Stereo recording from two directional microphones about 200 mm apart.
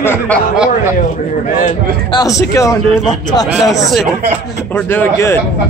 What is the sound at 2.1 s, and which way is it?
Speech, 20° left (ahead or behind).